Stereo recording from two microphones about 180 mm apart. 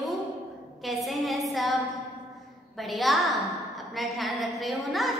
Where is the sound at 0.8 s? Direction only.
Centre (ahead or behind).